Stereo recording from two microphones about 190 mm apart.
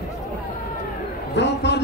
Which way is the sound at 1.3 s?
65° left (ahead or behind).